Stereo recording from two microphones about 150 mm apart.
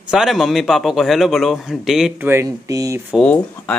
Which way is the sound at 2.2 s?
20° right (ahead or behind).